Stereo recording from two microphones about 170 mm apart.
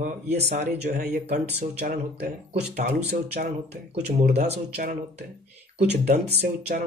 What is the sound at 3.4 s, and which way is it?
Mantra, 45° right (ahead or behind).